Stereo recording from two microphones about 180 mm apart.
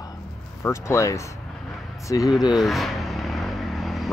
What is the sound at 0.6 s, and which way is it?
Speech, 15° left (ahead or behind).